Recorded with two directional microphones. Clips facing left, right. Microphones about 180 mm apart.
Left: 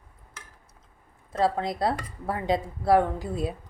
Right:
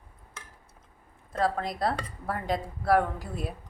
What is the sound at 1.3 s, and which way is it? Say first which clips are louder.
Speech: left 3 dB; 25° left (ahead or behind).